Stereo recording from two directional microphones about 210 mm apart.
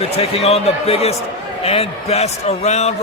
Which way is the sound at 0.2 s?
30° left (ahead or behind).